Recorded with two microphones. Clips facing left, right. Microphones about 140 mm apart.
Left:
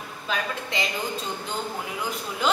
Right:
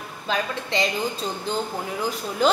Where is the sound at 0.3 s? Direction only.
35° right (ahead or behind).